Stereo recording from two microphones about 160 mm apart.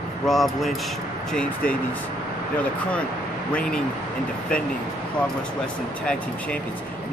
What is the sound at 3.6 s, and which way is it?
Speech, 5° left (ahead or behind).